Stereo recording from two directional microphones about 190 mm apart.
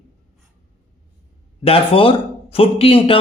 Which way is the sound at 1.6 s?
30° left (ahead or behind).